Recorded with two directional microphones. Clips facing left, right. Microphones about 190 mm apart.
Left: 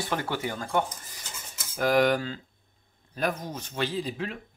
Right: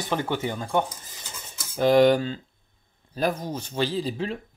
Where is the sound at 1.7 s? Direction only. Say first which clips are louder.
Right 5 dB; 30° right (ahead or behind).